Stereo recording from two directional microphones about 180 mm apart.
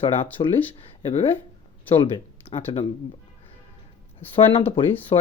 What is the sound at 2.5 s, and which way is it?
Speech, 35° left (ahead or behind).